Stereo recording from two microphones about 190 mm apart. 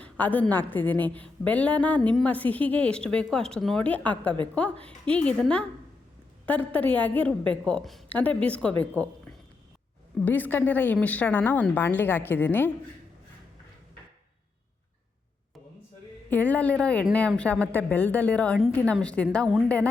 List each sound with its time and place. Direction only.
0.0 s a woman's voice: 10° left (ahead or behind)
10.2 s a woman's voice: 10° left (ahead or behind)
16.3 s a woman's voice: 10° left (ahead or behind)